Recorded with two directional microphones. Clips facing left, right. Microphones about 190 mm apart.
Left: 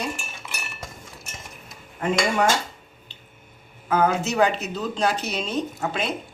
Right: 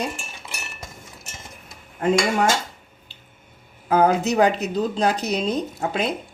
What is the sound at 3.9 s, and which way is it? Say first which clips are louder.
Speech: right 4 dB; 35° right (ahead or behind).